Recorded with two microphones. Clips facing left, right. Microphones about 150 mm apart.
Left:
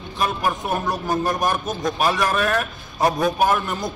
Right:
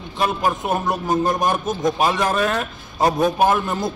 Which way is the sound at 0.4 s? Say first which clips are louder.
Right 2 dB; 20° right (ahead or behind).